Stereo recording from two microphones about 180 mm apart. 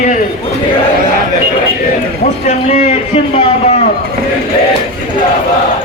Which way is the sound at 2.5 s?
40° left (ahead or behind).